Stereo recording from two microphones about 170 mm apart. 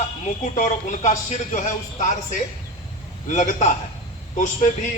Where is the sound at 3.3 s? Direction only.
45° left (ahead or behind).